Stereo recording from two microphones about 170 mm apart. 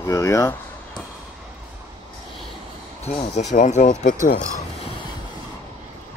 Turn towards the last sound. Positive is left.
turn(degrees=50)  # may be behind; listen again after turning